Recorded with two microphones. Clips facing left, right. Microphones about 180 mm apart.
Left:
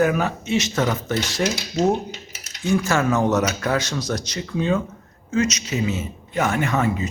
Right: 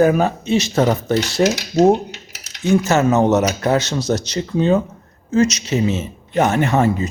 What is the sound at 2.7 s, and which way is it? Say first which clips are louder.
Speech: right 5 dB; 20° right (ahead or behind).